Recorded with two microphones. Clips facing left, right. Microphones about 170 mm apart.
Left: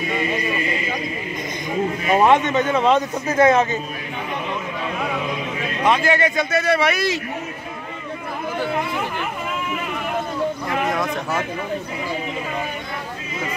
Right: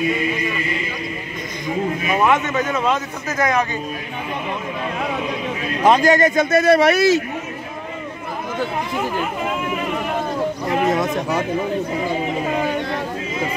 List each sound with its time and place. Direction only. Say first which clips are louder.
2.0 s speech: left 3 dB; 30° left (ahead or behind)
5.9 s speech: right 5 dB; 40° right (ahead or behind)
10.7 s speech: right 4 dB; 20° right (ahead or behind)